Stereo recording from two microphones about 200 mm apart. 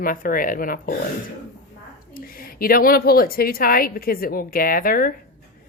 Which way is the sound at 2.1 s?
45° left (ahead or behind).